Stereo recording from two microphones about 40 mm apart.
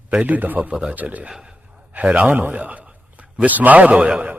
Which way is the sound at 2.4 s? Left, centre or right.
Right.